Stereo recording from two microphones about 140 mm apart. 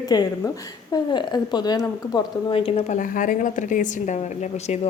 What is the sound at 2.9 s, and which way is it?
A woman's voice, 70° left (ahead or behind).